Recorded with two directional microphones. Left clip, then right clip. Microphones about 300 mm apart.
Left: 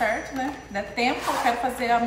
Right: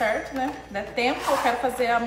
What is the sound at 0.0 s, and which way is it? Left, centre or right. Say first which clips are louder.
A woman's voice: right 1 dB; centre.